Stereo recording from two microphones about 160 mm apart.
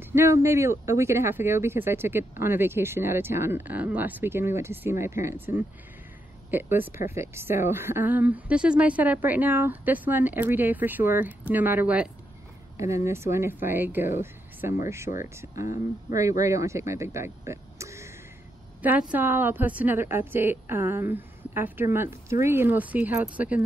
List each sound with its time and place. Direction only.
0.0 s speech: 15° right (ahead or behind)
15.6 s speech: 55° left (ahead or behind)
16.4 s speech: 20° right (ahead or behind)